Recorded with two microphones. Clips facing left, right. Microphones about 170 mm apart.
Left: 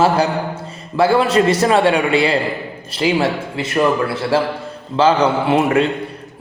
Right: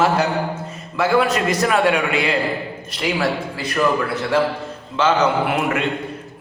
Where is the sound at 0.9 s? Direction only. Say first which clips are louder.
Left 4 dB; 30° left (ahead or behind).